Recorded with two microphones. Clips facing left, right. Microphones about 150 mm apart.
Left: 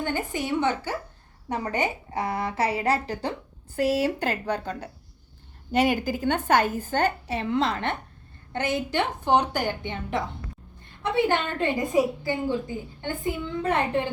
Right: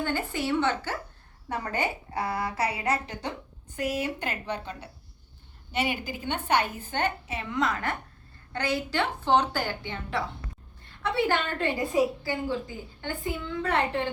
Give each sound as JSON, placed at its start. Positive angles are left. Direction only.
{"t": 0.0, "sound": "a woman's voice", "side_deg": 15}